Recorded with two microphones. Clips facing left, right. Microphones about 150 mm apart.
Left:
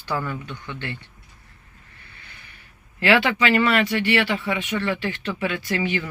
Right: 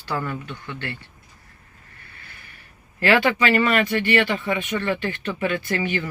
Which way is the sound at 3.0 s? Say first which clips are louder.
Even; 10° left (ahead or behind).